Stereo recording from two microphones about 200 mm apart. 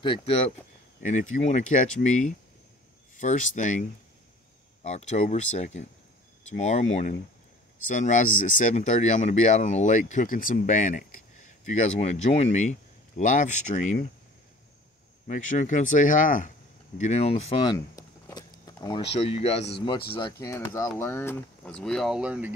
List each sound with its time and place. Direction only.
0.0 s speech: 30° left (ahead or behind)
4.8 s speech: 35° left (ahead or behind)
15.2 s speech: 40° left (ahead or behind)
20.2 s speech: 20° left (ahead or behind); by 22.5 s 5° right (ahead or behind)